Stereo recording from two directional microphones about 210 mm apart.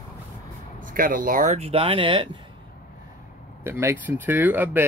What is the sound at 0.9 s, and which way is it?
Speech, 40° right (ahead or behind).